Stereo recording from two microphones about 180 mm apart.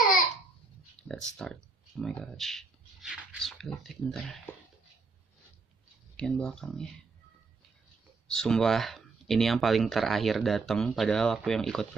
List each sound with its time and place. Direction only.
1.0 s a sound: 90° left
1.3 s speech: 5° left (ahead or behind)
6.1 s speech: 5° left (ahead or behind)
8.3 s speech: 5° left (ahead or behind)